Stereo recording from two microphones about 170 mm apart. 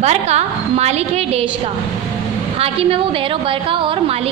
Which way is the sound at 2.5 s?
35° right (ahead or behind).